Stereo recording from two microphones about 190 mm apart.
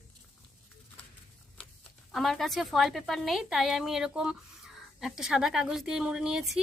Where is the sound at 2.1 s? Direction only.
Centre (ahead or behind).